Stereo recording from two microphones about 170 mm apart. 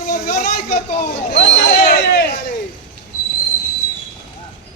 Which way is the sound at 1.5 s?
70° left (ahead or behind).